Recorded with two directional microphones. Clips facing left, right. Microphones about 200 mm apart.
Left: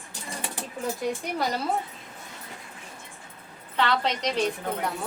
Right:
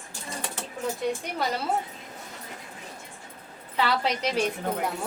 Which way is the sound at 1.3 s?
Centre (ahead or behind).